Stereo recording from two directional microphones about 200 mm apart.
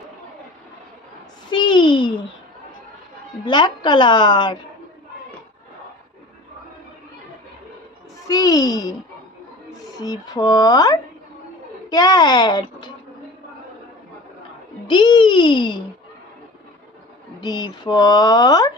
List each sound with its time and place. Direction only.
1.5 s a sound: 25° left (ahead or behind)
3.4 s speech: 25° left (ahead or behind)
8.3 s a child's voice: 20° left (ahead or behind)
14.9 s speech: 25° left (ahead or behind)
17.4 s speech: 20° left (ahead or behind)